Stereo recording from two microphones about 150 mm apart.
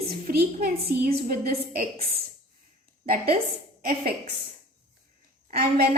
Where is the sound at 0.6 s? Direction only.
80° right.